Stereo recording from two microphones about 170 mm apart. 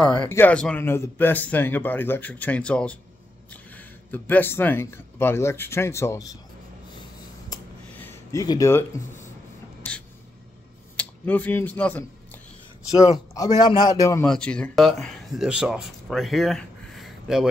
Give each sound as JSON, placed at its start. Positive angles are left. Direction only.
{"t": 0.0, "sound": "speech", "side_deg": 5}
{"t": 7.9, "sound": "speech", "side_deg": 15}
{"t": 11.0, "sound": "speech", "side_deg": 10}
{"t": 13.7, "sound": "a man's voice", "side_deg": 25}
{"t": 14.2, "sound": "speech", "side_deg": 5}